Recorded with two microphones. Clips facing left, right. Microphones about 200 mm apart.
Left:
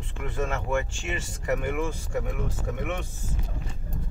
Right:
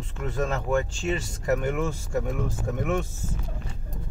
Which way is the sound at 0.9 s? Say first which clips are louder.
Right 6 dB; 40° right (ahead or behind).